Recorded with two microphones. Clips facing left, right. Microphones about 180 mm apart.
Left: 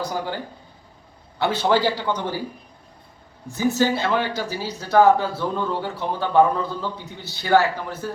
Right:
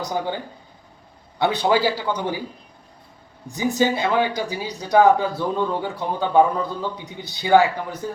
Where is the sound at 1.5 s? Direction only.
15° right (ahead or behind).